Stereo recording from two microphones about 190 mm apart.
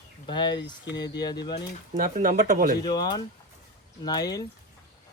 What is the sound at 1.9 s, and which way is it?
Speech, 45° right (ahead or behind).